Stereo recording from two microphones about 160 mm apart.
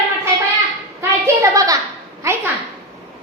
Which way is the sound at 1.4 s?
20° right (ahead or behind).